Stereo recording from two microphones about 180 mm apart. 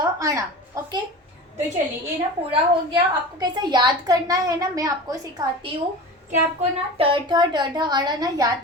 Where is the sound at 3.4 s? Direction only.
25° right (ahead or behind).